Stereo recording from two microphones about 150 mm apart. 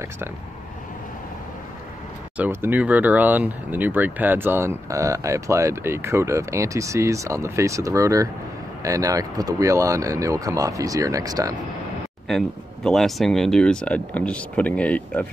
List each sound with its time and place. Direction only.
2.3 s speech: 10° right (ahead or behind)
12.3 s speech: 5° left (ahead or behind)